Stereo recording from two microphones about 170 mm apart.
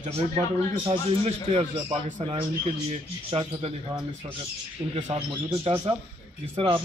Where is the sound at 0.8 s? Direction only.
35° right (ahead or behind).